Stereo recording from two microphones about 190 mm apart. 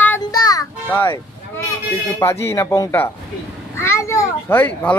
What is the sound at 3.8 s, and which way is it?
Children playing, 15° left (ahead or behind).